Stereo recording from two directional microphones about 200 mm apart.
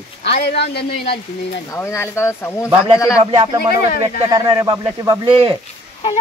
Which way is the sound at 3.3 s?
25° right (ahead or behind).